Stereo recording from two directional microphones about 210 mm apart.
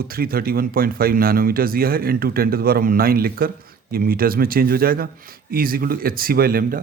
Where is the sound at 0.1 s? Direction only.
45° right (ahead or behind).